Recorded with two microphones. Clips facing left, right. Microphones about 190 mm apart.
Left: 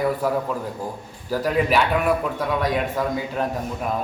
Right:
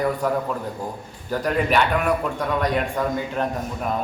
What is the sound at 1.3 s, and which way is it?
A man's voice, centre (ahead or behind).